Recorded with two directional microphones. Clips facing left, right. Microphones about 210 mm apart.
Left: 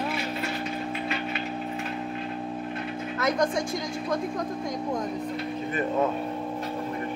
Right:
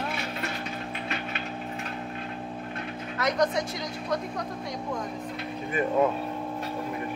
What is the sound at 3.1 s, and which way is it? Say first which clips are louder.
Music: even; 50° left (ahead or behind).